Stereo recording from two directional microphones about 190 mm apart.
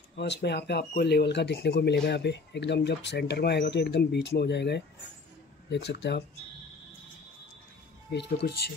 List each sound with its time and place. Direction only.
0.1 s speech: 60° left (ahead or behind)
8.1 s speech: 60° left (ahead or behind)